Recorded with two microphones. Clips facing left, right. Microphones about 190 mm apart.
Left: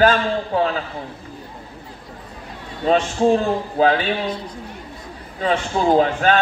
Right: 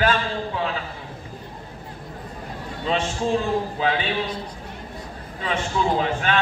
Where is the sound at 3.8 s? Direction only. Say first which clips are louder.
Left 10 dB; 45° left (ahead or behind).